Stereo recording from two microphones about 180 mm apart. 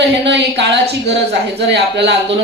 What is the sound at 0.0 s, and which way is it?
Speech, 70° right (ahead or behind).